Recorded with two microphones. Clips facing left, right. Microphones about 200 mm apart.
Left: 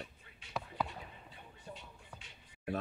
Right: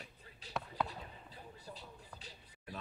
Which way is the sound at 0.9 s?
35° right (ahead or behind).